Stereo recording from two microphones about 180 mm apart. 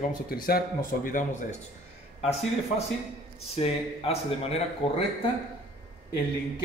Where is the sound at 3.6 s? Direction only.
35° left (ahead or behind).